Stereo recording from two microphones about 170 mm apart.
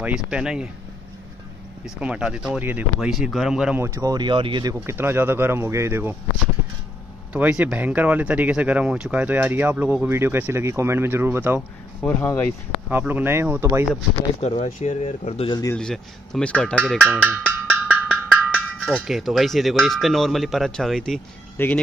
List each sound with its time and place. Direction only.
0.0 s speech: 5° right (ahead or behind)
2.0 s speech: 5° right (ahead or behind)
3.8 s speech: 20° right (ahead or behind)
4.8 s speech: 15° right (ahead or behind)
7.3 s speech: 10° right (ahead or behind)
12.0 s speech: 10° left (ahead or behind)
12.9 s speech: 10° right (ahead or behind)
14.4 s speech: 40° left (ahead or behind)
15.7 s speech: 5° left (ahead or behind)
17.8 s percussion: 10° right (ahead or behind)
18.9 s speech: centre (ahead or behind)